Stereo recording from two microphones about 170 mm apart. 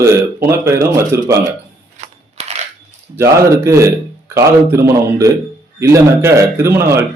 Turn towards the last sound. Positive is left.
turn(degrees=-15)  # may be behind; listen again after turning